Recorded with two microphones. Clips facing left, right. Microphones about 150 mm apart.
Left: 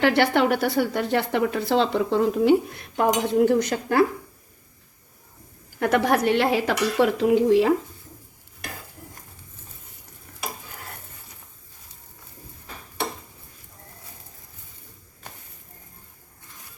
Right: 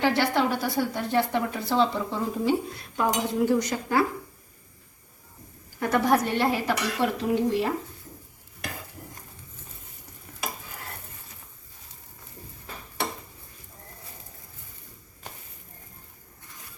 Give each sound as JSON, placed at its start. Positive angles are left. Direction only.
{"t": 0.0, "sound": "a woman's voice", "side_deg": 70}
{"t": 3.3, "sound": "cutlery", "side_deg": 60}
{"t": 5.8, "sound": "a woman's voice", "side_deg": 65}